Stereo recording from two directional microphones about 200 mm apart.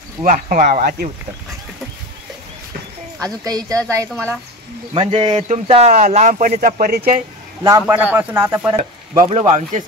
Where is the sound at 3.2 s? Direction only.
20° right (ahead or behind).